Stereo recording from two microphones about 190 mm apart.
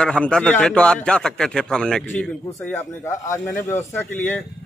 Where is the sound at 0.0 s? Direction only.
5° left (ahead or behind).